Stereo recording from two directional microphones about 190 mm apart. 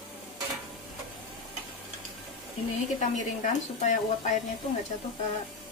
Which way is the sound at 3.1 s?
40° left (ahead or behind).